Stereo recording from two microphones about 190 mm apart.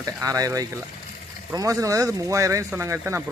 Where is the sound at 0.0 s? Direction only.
20° right (ahead or behind).